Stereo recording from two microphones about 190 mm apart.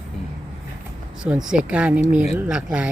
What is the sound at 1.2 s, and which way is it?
Speech, 5° right (ahead or behind).